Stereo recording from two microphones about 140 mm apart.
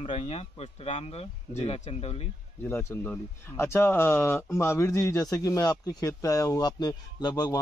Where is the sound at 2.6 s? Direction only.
15° left (ahead or behind).